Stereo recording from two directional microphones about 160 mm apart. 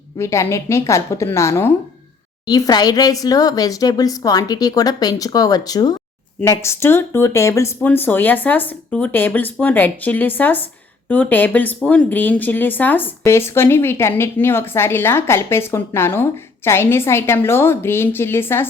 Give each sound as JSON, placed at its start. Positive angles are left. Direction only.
{"t": 0.2, "sound": "speech", "side_deg": 15}